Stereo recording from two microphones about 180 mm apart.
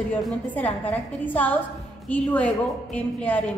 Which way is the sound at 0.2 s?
10° left (ahead or behind).